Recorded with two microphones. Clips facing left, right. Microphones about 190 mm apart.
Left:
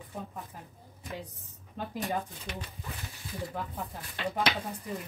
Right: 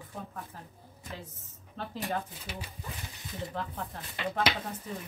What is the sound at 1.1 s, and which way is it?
Speech, 15° left (ahead or behind).